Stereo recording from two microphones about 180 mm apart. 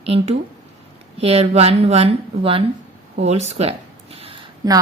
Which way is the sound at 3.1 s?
35° right (ahead or behind).